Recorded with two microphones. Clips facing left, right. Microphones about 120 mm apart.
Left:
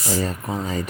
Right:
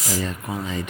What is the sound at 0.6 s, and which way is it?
Speech, 40° left (ahead or behind).